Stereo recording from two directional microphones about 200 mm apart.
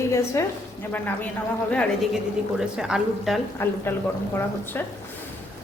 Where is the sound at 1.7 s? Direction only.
Centre (ahead or behind).